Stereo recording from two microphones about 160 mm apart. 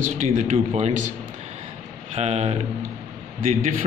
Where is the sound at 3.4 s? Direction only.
55° right (ahead or behind).